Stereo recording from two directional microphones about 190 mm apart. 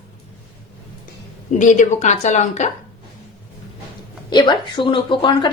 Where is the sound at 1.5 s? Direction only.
40° left (ahead or behind).